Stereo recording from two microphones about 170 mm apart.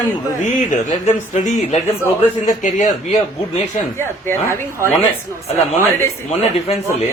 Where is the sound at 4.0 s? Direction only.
15° left (ahead or behind).